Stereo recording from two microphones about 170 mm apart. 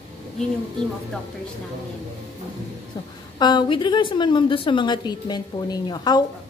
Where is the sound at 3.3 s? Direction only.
25° left (ahead or behind).